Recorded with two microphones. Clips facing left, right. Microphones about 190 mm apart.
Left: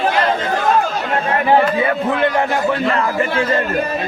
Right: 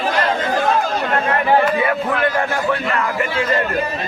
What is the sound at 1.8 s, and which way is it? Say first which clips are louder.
A man's voice: left 2 dB; 25° left (ahead or behind).